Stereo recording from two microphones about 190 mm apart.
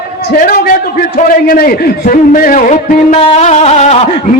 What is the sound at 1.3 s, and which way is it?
A man's voice, 50° left (ahead or behind).